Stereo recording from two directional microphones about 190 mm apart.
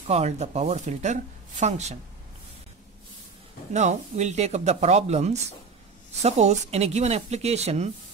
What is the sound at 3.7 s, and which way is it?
Speech, 40° right (ahead or behind).